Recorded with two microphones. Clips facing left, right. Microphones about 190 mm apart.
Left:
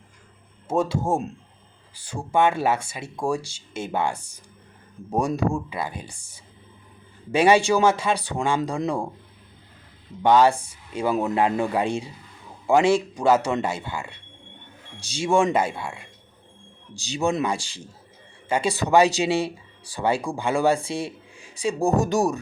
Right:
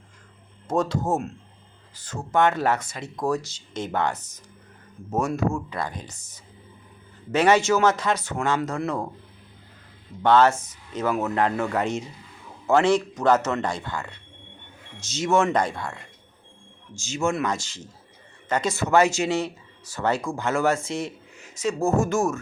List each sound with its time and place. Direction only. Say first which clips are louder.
0.7 s speech: left 1 dB; 10° left (ahead or behind)
10.2 s speech: left 1 dB; 15° left (ahead or behind)